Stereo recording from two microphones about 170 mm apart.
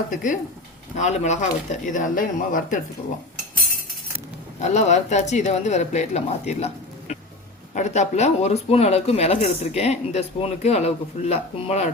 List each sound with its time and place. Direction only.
0.1 s speech: 50° left (ahead or behind)
4.6 s speech: 40° left (ahead or behind)
7.7 s speech: 45° left (ahead or behind)